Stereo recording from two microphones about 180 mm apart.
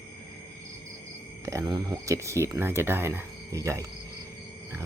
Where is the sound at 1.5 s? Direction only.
20° right (ahead or behind).